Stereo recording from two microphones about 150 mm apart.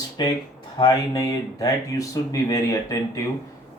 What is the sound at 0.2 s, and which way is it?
Speech, 30° left (ahead or behind).